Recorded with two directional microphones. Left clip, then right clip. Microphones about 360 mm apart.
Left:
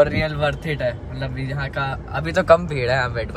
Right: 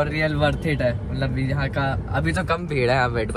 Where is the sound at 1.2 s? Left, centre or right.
Centre.